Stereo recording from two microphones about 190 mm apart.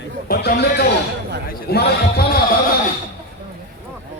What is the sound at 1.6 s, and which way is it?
Speech, 55° left (ahead or behind).